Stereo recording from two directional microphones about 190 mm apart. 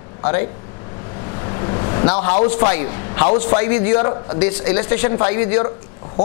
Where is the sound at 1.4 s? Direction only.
25° left (ahead or behind).